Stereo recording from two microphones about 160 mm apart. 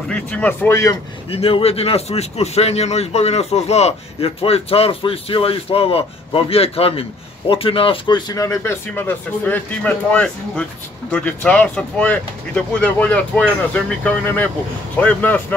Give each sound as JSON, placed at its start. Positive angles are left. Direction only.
{"t": 0.1, "sound": "speech", "side_deg": 10}
{"t": 1.3, "sound": "speech", "side_deg": 35}